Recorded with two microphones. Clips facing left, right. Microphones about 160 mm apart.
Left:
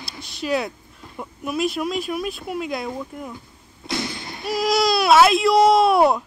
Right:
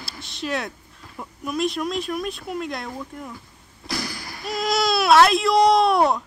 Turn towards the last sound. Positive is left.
turn(degrees=0)  # may be behind; listen again after turning